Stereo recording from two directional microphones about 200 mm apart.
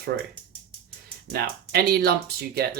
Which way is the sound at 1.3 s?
50° right (ahead or behind).